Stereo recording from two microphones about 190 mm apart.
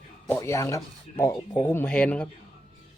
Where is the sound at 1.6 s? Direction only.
10° left (ahead or behind).